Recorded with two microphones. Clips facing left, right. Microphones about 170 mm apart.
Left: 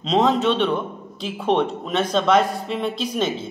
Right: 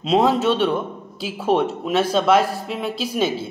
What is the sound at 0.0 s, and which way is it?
A man's voice, 10° right (ahead or behind).